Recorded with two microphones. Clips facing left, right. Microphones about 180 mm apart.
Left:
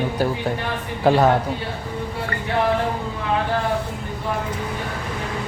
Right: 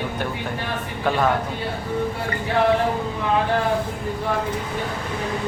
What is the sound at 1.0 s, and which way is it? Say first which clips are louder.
Speech: left 5 dB; 35° left (ahead or behind).